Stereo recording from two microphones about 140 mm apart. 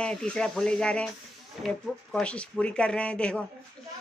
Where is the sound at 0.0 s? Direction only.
5° left (ahead or behind).